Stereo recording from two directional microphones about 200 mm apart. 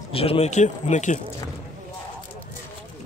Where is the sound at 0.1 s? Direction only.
30° left (ahead or behind).